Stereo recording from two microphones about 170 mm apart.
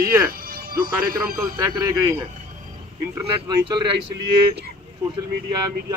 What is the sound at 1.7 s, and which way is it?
Speech, 20° right (ahead or behind).